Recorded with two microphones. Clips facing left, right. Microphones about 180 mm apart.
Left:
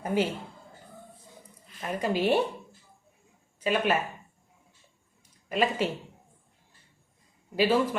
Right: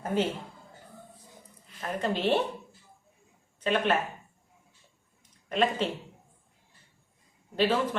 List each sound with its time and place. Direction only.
0.0 s a woman's voice: 10° left (ahead or behind)
1.8 s a woman's voice: 10° left (ahead or behind)
3.6 s a woman's voice: 10° left (ahead or behind)
5.5 s a woman's voice: 10° left (ahead or behind)
7.5 s a woman's voice: 10° left (ahead or behind)